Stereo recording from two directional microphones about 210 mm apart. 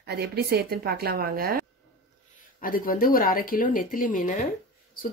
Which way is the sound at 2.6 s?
40° left (ahead or behind).